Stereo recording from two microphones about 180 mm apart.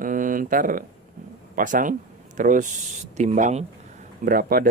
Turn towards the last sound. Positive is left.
turn(degrees=-55)  # may be behind; listen again after turning